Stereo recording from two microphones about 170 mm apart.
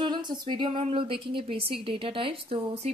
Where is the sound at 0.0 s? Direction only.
25° right (ahead or behind).